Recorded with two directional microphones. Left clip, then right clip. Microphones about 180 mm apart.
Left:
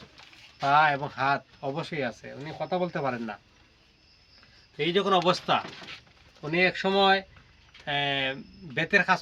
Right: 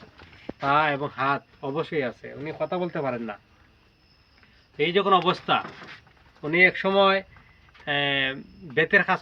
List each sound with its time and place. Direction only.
0.6 s speech: 30° left (ahead or behind)
4.8 s speech: 30° left (ahead or behind)